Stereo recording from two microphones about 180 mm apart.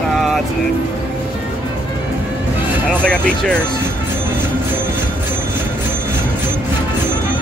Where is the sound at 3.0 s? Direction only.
5° left (ahead or behind).